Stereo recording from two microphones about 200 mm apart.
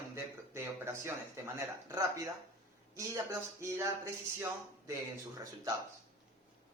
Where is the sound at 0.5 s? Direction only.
10° right (ahead or behind).